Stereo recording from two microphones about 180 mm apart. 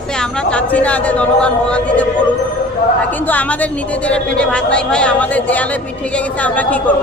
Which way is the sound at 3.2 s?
10° left (ahead or behind).